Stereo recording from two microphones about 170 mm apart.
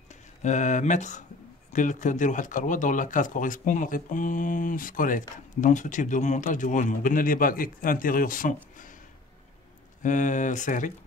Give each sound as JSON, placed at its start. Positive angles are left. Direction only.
{"t": 0.1, "sound": "speech", "side_deg": 45}
{"t": 10.0, "sound": "speech", "side_deg": 45}